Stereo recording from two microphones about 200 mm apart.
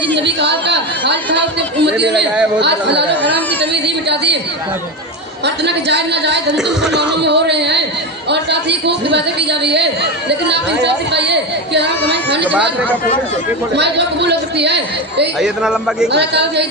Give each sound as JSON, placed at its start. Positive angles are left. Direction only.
{"t": 0.1, "sound": "a sound", "side_deg": -60}
{"t": 1.8, "sound": "a woman's voice", "side_deg": -60}
{"t": 3.2, "sound": "a sound", "side_deg": -60}
{"t": 5.6, "sound": "a woman's voice", "side_deg": -60}
{"t": 6.6, "sound": "a man's voice", "side_deg": 0}
{"t": 7.2, "sound": "a woman's voice", "side_deg": -60}
{"t": 13.7, "sound": "a woman's voice", "side_deg": -60}
{"t": 15.4, "sound": "a man's voice", "side_deg": -5}
{"t": 16.1, "sound": "a woman's voice", "side_deg": -60}